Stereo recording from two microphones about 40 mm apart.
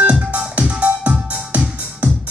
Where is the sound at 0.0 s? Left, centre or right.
Right.